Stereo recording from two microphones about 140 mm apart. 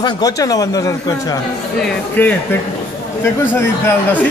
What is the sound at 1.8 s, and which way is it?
Speech, 10° left (ahead or behind).